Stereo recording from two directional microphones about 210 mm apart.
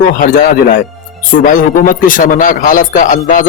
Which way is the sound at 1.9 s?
40° left (ahead or behind).